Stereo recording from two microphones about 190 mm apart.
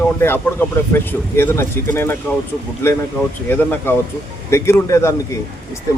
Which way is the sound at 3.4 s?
10° left (ahead or behind).